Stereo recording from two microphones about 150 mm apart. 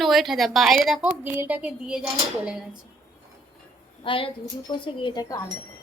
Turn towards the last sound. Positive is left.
turn(degrees=25)  # may be behind; listen again after turning